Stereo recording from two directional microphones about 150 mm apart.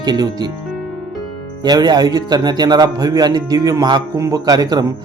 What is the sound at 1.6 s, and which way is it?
Speech, 25° right (ahead or behind).